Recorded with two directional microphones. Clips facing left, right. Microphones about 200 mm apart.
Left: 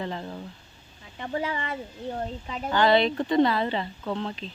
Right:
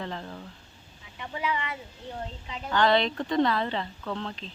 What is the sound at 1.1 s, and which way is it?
Speech, 45° left (ahead or behind).